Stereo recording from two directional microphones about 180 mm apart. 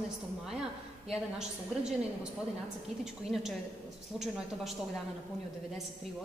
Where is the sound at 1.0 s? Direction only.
5° right (ahead or behind).